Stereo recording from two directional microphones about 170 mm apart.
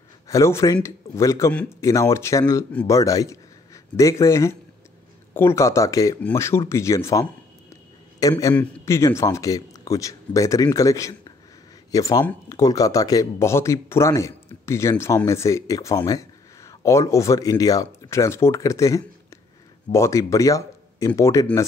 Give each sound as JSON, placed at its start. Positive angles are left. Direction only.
{"t": 0.3, "sound": "speech", "side_deg": 15}
{"t": 1.5, "sound": "speech", "side_deg": 5}
{"t": 1.8, "sound": "speech", "side_deg": 20}
{"t": 2.7, "sound": "speech", "side_deg": 10}
{"t": 3.0, "sound": "speech", "side_deg": 20}